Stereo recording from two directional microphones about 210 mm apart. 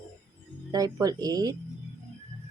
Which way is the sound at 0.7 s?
15° right (ahead or behind).